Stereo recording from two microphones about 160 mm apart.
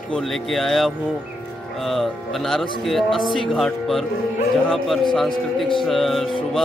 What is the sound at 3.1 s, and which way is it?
Speech, 30° left (ahead or behind).